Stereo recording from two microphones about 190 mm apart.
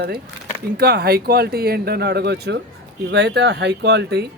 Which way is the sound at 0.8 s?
55° right (ahead or behind).